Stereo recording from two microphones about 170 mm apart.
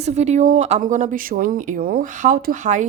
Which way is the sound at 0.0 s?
40° right (ahead or behind).